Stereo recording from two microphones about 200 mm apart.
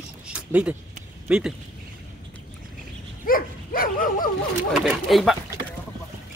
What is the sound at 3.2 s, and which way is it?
Dog, 45° left (ahead or behind).